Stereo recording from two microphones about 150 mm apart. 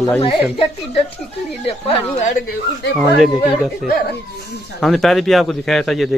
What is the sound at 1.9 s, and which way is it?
Speech, 40° left (ahead or behind).